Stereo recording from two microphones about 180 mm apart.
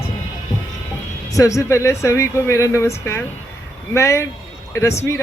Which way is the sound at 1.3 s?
20° left (ahead or behind).